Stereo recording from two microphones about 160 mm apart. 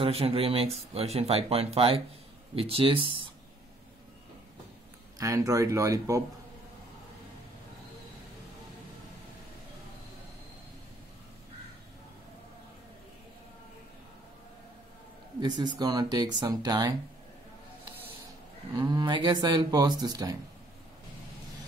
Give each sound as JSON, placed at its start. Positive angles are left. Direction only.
{"t": 0.0, "sound": "speech", "side_deg": -35}
{"t": 5.2, "sound": "speech", "side_deg": -20}
{"t": 15.4, "sound": "speech", "side_deg": -25}
{"t": 18.8, "sound": "speech", "side_deg": -25}